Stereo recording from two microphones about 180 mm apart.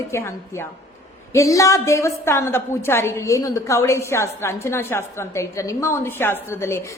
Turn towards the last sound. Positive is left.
turn(degrees=15)  # may be behind; listen again after turning